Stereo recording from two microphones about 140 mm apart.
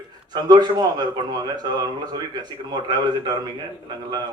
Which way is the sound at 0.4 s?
30° right (ahead or behind).